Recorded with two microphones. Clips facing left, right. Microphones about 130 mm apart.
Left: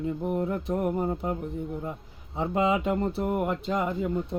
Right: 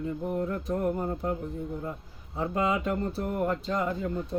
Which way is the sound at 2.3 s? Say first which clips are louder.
Left 3 dB; 20° left (ahead or behind).